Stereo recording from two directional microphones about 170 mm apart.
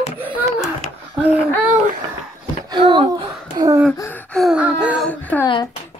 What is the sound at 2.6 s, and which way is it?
Speech, 30° right (ahead or behind).